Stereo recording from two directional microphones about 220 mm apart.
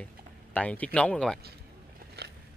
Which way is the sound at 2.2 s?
45° right (ahead or behind).